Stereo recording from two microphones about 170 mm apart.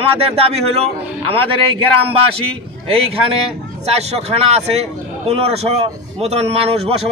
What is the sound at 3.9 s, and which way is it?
A man's voice, 40° right (ahead or behind).